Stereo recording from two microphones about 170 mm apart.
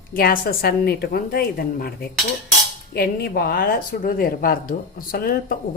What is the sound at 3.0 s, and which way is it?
Speech, 65° left (ahead or behind).